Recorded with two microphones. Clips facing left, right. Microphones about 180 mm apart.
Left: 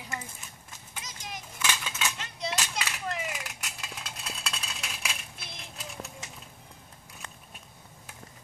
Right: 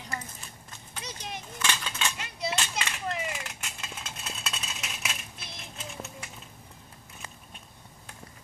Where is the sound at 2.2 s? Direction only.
5° right (ahead or behind).